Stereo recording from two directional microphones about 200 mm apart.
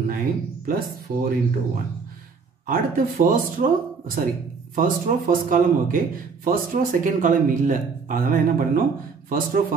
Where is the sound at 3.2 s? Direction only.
45° right (ahead or behind).